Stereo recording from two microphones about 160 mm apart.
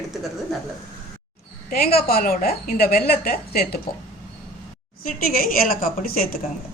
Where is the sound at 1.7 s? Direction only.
75° left (ahead or behind).